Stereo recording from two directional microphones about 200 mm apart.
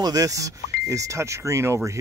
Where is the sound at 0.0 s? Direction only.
20° right (ahead or behind).